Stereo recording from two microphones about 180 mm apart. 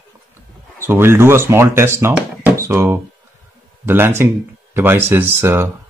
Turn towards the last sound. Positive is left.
turn(degrees=-15)  # may be behind; listen again after turning